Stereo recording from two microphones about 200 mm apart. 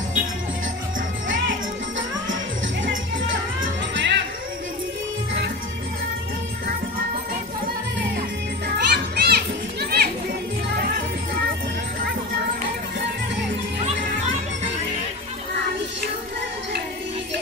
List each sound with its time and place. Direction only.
3.9 s music: 65° right (ahead or behind)
8.7 s children playing: 55° right (ahead or behind)